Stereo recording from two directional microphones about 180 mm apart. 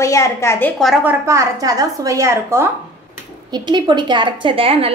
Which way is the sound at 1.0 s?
15° right (ahead or behind).